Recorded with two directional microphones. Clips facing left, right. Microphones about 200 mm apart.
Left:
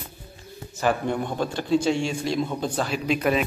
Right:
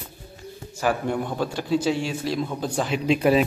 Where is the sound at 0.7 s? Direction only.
10° right (ahead or behind).